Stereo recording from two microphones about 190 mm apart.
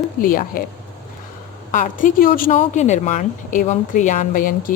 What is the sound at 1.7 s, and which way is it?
Speech, 45° left (ahead or behind).